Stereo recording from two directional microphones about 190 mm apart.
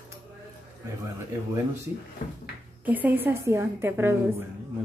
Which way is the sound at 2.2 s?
45° left (ahead or behind).